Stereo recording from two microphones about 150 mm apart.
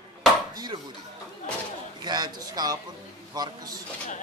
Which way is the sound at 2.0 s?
30° right (ahead or behind).